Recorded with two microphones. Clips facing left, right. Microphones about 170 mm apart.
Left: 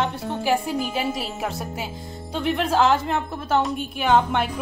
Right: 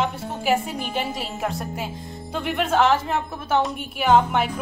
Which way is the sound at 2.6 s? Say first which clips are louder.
Right 1 dB; centre (ahead or behind).